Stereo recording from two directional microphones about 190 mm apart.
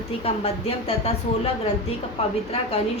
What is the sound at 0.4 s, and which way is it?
Speech, 30° left (ahead or behind).